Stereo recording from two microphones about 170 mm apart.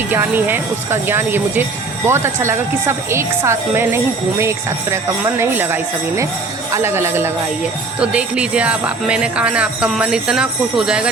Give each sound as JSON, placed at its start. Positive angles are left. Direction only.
{"t": 0.1, "sound": "speech", "side_deg": -10}